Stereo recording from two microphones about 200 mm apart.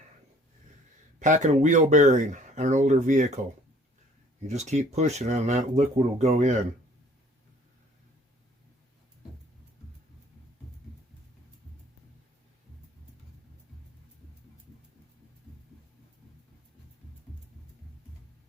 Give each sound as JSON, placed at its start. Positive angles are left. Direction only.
{"t": 1.2, "sound": "speech", "side_deg": -40}
{"t": 4.4, "sound": "speech", "side_deg": -35}